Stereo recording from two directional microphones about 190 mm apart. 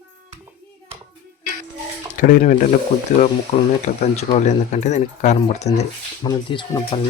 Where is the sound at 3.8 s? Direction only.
35° left (ahead or behind).